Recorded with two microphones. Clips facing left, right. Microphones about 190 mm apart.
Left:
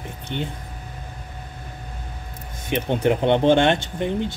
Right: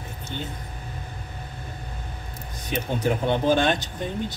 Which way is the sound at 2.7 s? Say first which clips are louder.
Left 5 dB; 25° left (ahead or behind).